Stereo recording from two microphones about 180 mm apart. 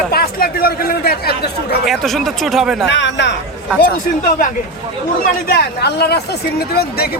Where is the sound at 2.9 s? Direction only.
80° left.